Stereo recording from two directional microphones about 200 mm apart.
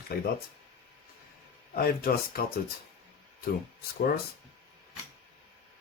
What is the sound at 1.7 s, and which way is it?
Speech, 45° left (ahead or behind).